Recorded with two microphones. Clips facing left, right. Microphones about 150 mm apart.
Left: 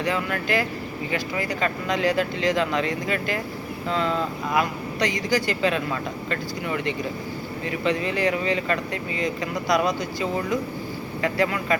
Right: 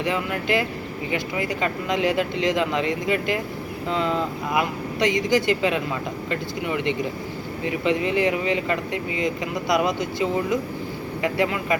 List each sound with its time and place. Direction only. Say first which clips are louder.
0.0 s speech: right 1 dB; 20° right (ahead or behind)